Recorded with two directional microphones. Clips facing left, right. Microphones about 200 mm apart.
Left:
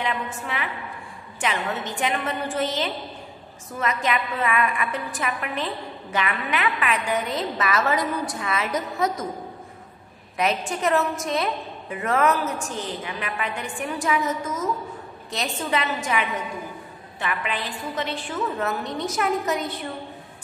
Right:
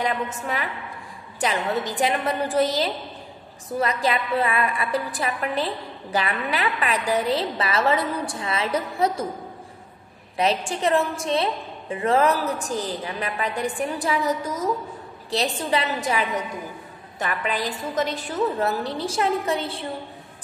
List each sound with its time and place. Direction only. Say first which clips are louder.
0.0 s a woman's voice: right 3 dB; 40° right (ahead or behind)
10.3 s a woman's voice: right 2 dB; 30° right (ahead or behind)